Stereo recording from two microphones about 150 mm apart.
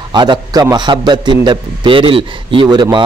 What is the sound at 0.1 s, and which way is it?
A man's voice, 30° right (ahead or behind).